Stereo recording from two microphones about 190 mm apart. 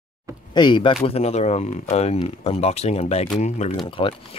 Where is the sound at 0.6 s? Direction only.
25° left (ahead or behind).